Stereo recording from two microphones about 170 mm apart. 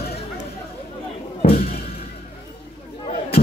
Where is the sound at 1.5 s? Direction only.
60° left (ahead or behind).